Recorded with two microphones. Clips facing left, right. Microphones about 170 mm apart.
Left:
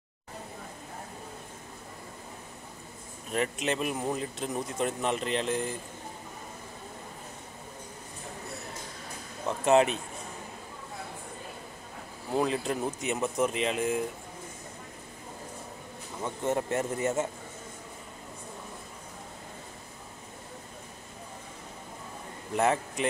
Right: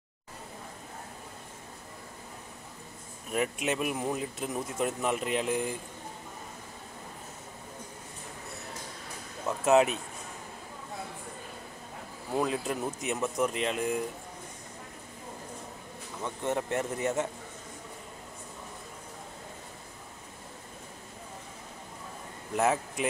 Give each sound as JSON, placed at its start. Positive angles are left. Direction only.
{"t": 3.3, "sound": "speech", "side_deg": -5}
{"t": 9.5, "sound": "speech", "side_deg": 0}
{"t": 12.4, "sound": "speech", "side_deg": 0}
{"t": 16.2, "sound": "speech", "side_deg": 5}
{"t": 22.6, "sound": "speech", "side_deg": -5}